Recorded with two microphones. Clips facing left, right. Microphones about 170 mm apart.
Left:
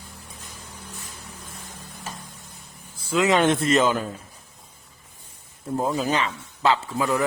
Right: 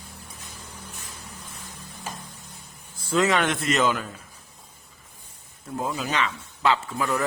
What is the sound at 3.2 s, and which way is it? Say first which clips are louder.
Speech: left 4 dB; 25° left (ahead or behind).